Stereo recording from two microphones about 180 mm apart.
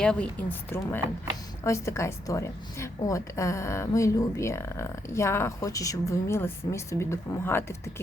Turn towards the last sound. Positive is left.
turn(degrees=15)  # may be behind; listen again after turning